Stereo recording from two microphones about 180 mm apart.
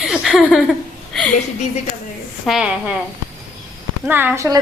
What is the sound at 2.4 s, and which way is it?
Speech, centre (ahead or behind).